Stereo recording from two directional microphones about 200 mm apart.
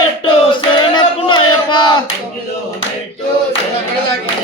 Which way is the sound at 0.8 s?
25° left (ahead or behind).